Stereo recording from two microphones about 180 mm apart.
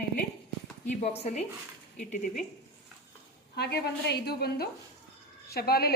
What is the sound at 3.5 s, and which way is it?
A woman's voice, 65° left (ahead or behind).